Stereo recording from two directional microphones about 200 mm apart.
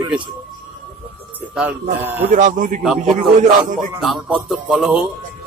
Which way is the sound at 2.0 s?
10° right (ahead or behind).